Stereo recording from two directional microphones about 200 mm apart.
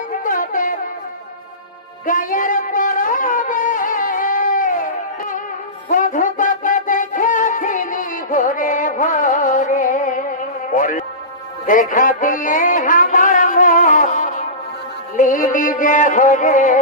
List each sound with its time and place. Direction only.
0.2 s music: 40° left (ahead or behind)
2.0 s music: 40° left (ahead or behind)
5.9 s music: 40° left (ahead or behind)